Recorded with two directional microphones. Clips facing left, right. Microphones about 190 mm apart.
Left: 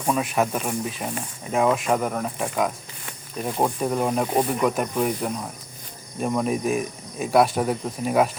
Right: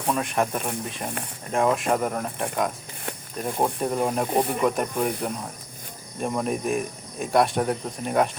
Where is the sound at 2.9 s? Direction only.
55° right (ahead or behind).